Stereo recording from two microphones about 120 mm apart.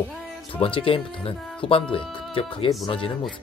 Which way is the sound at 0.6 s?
50° left (ahead or behind).